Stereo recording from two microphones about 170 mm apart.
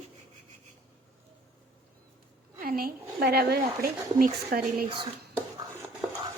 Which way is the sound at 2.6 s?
60° right (ahead or behind).